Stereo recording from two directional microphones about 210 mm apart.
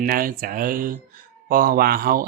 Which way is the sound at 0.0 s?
45° right (ahead or behind).